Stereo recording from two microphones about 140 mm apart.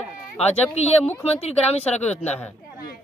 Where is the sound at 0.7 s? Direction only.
50° left (ahead or behind).